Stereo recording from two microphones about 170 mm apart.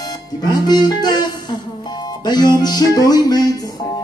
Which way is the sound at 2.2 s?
25° left (ahead or behind).